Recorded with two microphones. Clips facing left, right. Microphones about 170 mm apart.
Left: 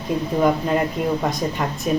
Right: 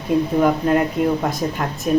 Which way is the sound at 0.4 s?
Centre (ahead or behind).